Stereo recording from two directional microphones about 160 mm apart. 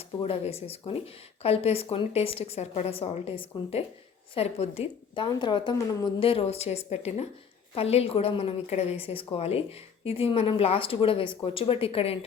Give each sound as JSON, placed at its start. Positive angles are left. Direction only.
{"t": 0.0, "sound": "a woman's voice", "side_deg": 40}